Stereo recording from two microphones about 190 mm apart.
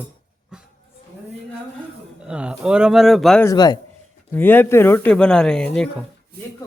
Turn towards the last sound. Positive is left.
turn(degrees=5)  # may be behind; listen again after turning